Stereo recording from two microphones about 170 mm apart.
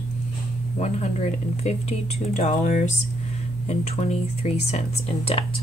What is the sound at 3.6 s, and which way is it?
Speech, 40° left (ahead or behind).